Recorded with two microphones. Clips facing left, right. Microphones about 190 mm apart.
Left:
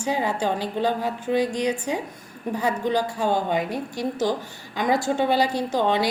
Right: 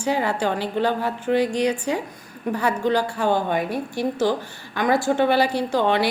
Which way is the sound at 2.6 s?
15° left (ahead or behind).